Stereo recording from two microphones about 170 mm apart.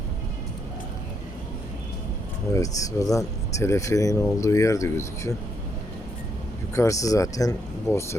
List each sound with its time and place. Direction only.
2.5 s speech: 20° left (ahead or behind)
6.7 s speech: 20° left (ahead or behind)